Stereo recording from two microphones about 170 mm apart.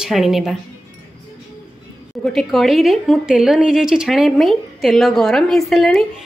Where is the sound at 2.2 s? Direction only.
Centre (ahead or behind).